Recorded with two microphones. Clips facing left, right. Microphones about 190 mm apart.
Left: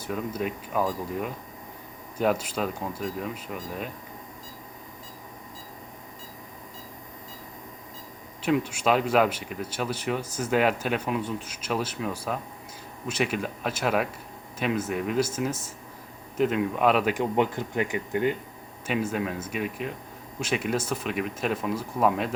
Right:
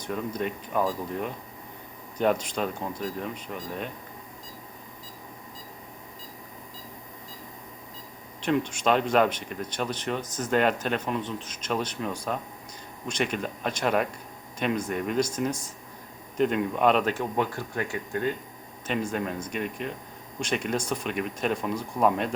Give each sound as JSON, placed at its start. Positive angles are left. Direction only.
{"t": 0.0, "sound": "speech", "side_deg": 5}
{"t": 8.4, "sound": "speech", "side_deg": 5}
{"t": 18.9, "sound": "speech", "side_deg": 5}